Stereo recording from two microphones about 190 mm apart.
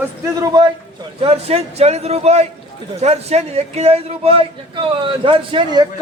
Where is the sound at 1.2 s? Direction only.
30° right (ahead or behind).